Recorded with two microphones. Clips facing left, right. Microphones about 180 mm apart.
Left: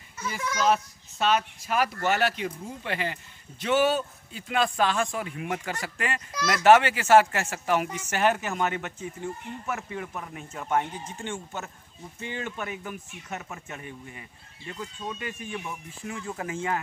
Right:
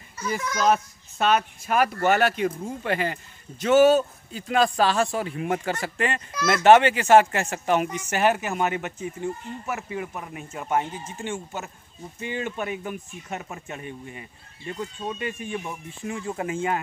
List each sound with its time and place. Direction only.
0.6 s a child's voice: 50° right (ahead or behind); by 16.5 s 25° right (ahead or behind)